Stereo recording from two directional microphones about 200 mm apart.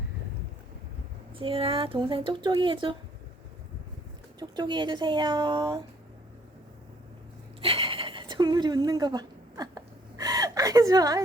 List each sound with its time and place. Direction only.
1.4 s speech: 25° right (ahead or behind)
4.4 s speech: 20° right (ahead or behind)
7.6 s a sound: 25° right (ahead or behind)